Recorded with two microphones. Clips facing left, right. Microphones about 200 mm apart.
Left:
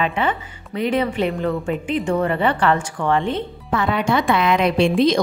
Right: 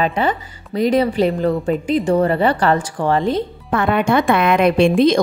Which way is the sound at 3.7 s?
55° right (ahead or behind).